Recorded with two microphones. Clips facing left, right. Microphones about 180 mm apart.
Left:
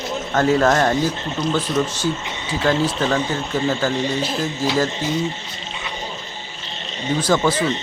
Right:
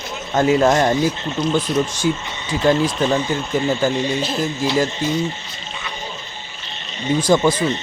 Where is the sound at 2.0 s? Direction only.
90° right.